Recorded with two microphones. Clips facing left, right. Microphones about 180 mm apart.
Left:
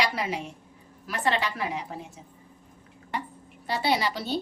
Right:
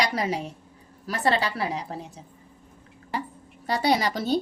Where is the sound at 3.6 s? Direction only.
45° right (ahead or behind).